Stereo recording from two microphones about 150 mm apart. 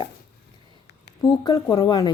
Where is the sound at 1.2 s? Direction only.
25° left (ahead or behind).